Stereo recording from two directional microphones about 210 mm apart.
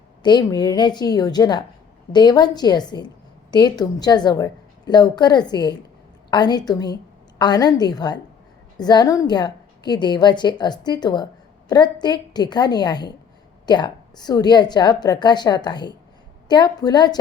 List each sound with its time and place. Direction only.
0.2 s a woman's voice: 20° left (ahead or behind)